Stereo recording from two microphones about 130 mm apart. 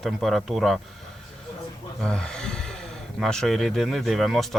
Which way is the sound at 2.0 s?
5° left (ahead or behind).